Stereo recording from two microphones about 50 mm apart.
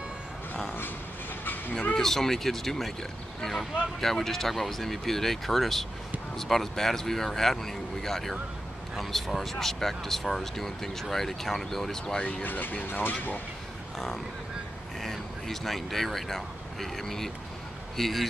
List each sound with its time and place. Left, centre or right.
1.4 s vehicle: left
2.0 s speech: centre
12.2 s speech: left
12.4 s speech: left
13.9 s speech: centre